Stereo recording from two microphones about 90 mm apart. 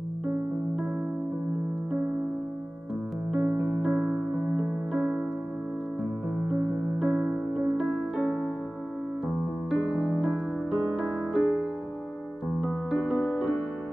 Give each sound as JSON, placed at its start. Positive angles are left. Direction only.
{"t": 3.3, "sound": "music", "side_deg": -25}
{"t": 3.8, "sound": "music", "side_deg": -15}
{"t": 6.5, "sound": "music", "side_deg": -10}
{"t": 10.8, "sound": "music", "side_deg": -5}
{"t": 12.5, "sound": "piano", "side_deg": -5}